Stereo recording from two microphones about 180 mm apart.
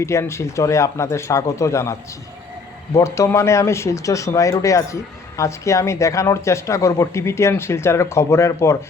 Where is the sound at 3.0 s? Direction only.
15° left (ahead or behind).